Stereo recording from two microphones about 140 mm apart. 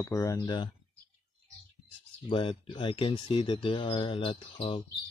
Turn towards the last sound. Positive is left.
turn(degrees=40)  # may be behind; listen again after turning